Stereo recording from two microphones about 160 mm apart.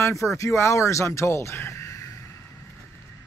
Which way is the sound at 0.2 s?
20° left (ahead or behind).